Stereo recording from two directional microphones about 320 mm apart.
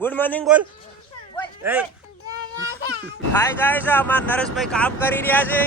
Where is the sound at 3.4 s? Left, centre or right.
Centre.